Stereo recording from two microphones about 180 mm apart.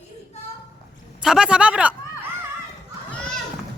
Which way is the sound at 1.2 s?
5° right (ahead or behind).